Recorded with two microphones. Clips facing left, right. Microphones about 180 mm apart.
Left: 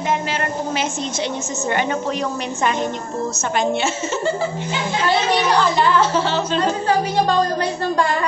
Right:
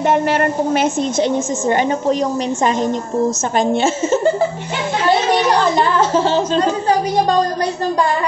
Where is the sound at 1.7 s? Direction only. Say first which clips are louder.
Right 5 dB; 35° right (ahead or behind).